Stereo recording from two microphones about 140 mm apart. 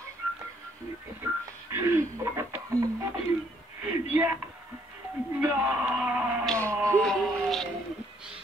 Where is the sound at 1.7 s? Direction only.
20° right (ahead or behind).